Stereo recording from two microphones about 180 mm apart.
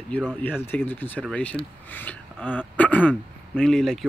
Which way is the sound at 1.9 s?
10° left (ahead or behind).